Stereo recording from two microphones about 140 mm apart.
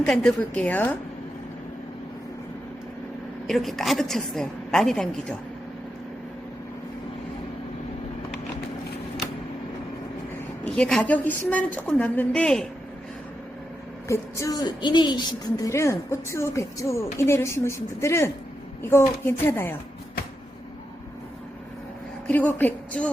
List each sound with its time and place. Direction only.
0.0 s a woman's voice: 5° left (ahead or behind)
3.4 s a woman's voice: centre (ahead or behind)
10.6 s a woman's voice: 5° left (ahead or behind)
14.1 s a woman's voice: 20° left (ahead or behind)
22.3 s a woman's voice: 10° left (ahead or behind)